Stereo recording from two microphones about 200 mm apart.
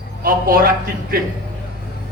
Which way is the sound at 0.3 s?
45° right (ahead or behind).